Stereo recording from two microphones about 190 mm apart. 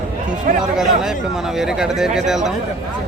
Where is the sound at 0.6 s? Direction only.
Centre (ahead or behind).